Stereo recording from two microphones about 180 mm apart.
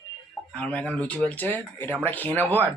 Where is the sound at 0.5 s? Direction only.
5° left (ahead or behind).